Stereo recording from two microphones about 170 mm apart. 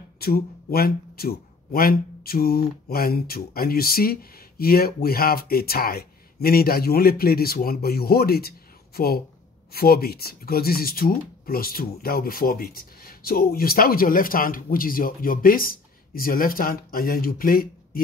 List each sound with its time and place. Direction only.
0.2 s speech: 65° left (ahead or behind)